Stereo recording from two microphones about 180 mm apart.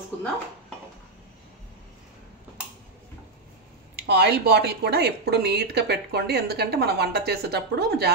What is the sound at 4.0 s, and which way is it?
Speech, 65° right (ahead or behind).